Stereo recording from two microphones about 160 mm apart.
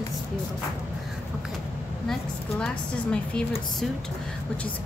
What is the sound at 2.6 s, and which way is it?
Speech, 5° left (ahead or behind).